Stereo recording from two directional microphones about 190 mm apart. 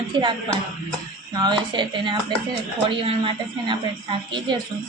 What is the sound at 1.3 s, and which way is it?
A woman's voice, 20° right (ahead or behind).